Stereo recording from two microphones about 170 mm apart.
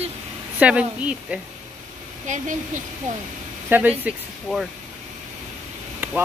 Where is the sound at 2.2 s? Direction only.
45° right (ahead or behind).